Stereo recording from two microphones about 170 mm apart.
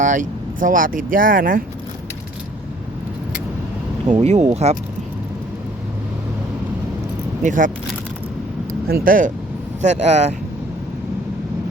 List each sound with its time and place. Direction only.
0.0 s speech: 50° right (ahead or behind)
4.1 s speech: 40° right (ahead or behind)
7.4 s speech: 50° right (ahead or behind)
8.9 s speech: 60° right (ahead or behind)
9.8 s speech: 40° right (ahead or behind)